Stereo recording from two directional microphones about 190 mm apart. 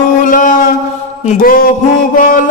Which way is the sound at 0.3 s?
45° left (ahead or behind).